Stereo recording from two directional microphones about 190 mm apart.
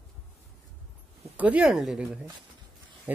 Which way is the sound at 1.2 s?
10° right (ahead or behind).